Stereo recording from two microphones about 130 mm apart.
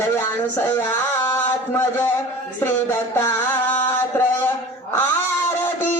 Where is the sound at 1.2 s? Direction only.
20° left (ahead or behind).